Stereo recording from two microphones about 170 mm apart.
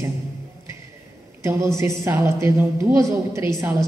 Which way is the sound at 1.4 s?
15° right (ahead or behind).